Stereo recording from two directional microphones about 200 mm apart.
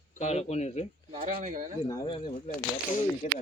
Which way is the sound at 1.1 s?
40° right (ahead or behind).